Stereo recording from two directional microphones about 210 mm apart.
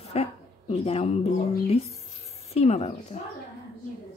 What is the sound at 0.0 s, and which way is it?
Speech, 30° left (ahead or behind).